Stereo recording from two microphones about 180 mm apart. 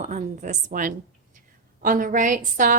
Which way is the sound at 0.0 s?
40° right (ahead or behind).